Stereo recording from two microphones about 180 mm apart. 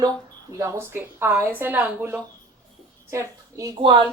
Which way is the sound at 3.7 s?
25° right (ahead or behind).